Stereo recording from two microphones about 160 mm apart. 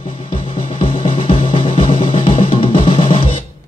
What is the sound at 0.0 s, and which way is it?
Music, 35° left (ahead or behind).